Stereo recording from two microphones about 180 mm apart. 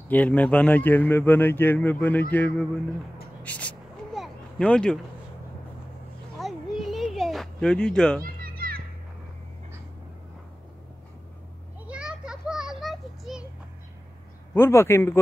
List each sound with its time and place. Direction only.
0.1 s speech: 10° left (ahead or behind)
3.4 s a sound: 5° left (ahead or behind)
6.4 s a sound: centre (ahead or behind)
8.2 s children playing: 55° right (ahead or behind)
11.8 s children playing: 5° right (ahead or behind)
14.5 s speech: 15° left (ahead or behind)